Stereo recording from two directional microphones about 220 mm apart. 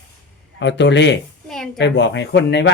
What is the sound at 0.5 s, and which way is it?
Speech, 55° left (ahead or behind).